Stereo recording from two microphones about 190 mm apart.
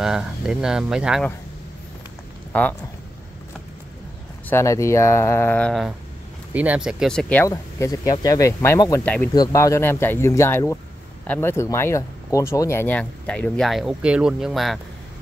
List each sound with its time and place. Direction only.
0.0 s speech: 5° right (ahead or behind)
2.5 s speech: 10° left (ahead or behind)
4.5 s speech: 15° left (ahead or behind)
7.4 s speech: 20° left (ahead or behind)
9.0 s speech: 5° left (ahead or behind)
9.3 s speech: 20° left (ahead or behind); by 14.8 s centre (ahead or behind)